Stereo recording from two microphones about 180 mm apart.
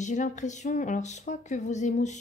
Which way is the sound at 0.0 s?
45° left (ahead or behind).